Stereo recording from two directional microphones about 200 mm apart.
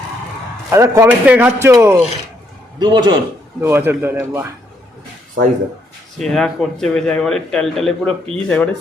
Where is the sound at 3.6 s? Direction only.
10° right (ahead or behind).